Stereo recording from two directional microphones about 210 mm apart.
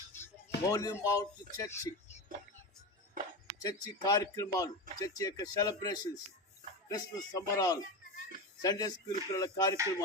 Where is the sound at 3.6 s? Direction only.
20° left (ahead or behind).